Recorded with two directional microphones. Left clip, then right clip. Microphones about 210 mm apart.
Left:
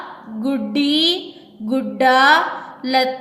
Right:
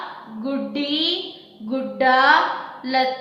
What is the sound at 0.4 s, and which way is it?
A woman's voice, 50° left (ahead or behind).